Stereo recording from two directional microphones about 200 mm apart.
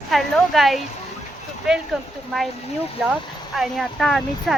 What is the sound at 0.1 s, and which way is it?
Speech, centre (ahead or behind).